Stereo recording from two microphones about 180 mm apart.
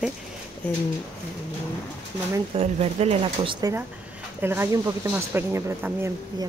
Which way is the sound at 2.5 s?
35° right (ahead or behind).